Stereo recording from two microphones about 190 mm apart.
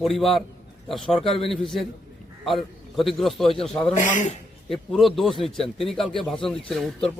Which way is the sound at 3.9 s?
40° left (ahead or behind).